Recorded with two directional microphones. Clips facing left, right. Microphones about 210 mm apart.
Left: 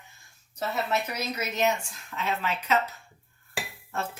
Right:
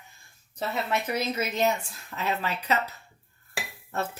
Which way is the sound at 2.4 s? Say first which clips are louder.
Left 4 dB; 35° right (ahead or behind).